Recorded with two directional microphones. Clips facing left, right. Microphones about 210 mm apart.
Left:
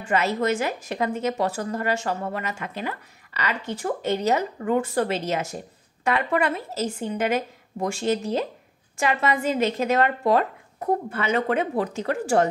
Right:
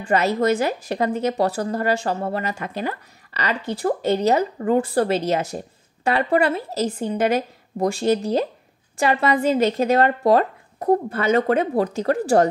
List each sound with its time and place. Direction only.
0.0 s a woman's voice: 35° right (ahead or behind)